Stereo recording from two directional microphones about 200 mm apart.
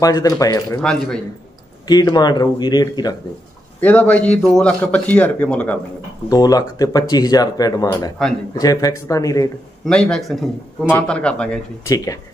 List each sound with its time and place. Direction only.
0.0 s a man's voice: 15° left (ahead or behind)
0.7 s a man's voice: 5° left (ahead or behind)
1.9 s speech: 20° left (ahead or behind)
3.8 s a man's voice: 5° left (ahead or behind)
6.2 s a man's voice: 20° left (ahead or behind)
9.8 s a man's voice: 5° left (ahead or behind)
11.8 s a man's voice: 15° left (ahead or behind)